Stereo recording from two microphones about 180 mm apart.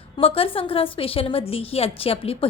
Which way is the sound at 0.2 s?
30° left (ahead or behind).